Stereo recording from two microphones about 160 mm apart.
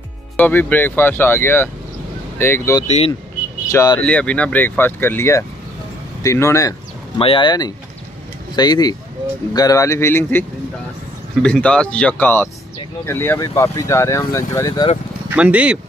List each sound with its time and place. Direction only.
0.4 s speech: 10° left (ahead or behind)
4.0 s speech: 5° left (ahead or behind)
7.2 s speech: 35° left (ahead or behind); by 10.4 s 15° left (ahead or behind)
11.4 s speech: 5° left (ahead or behind); by 14.9 s 20° left (ahead or behind)
15.2 s speech: 10° right (ahead or behind)